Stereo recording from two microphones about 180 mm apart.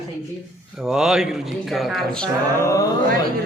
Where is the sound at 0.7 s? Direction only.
Centre (ahead or behind).